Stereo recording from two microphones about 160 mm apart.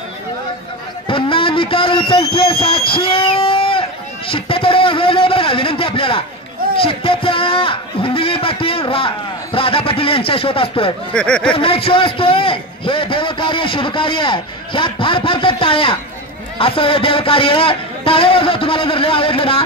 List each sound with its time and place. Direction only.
1.0 s a sound: 30° left (ahead or behind)
4.3 s a man's voice: 35° left (ahead or behind)
11.1 s speech: 5° left (ahead or behind)
11.5 s a man's voice: 35° left (ahead or behind)